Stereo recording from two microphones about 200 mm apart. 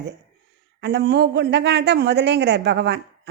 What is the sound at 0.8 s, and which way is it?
A woman's voice, 60° right (ahead or behind).